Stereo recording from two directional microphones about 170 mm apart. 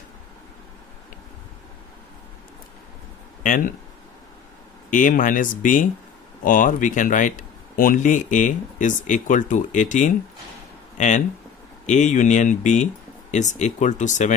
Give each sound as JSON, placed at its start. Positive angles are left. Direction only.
{"t": 3.4, "sound": "speech", "side_deg": 50}
{"t": 4.9, "sound": "speech", "side_deg": 50}